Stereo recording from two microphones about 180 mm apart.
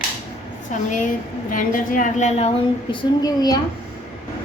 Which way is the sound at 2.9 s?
20° left (ahead or behind).